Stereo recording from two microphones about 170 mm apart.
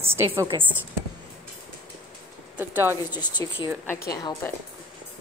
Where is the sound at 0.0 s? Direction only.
15° right (ahead or behind).